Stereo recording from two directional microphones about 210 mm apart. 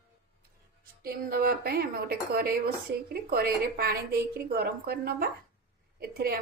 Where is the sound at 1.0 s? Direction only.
45° right (ahead or behind).